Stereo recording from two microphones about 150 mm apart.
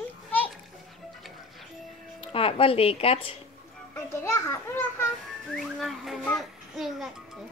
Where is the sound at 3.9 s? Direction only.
15° left (ahead or behind).